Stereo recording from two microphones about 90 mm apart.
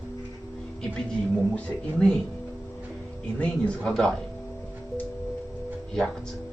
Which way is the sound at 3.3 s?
10° left (ahead or behind).